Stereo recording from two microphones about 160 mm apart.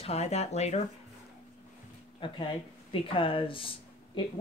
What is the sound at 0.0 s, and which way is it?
Speech, 40° left (ahead or behind).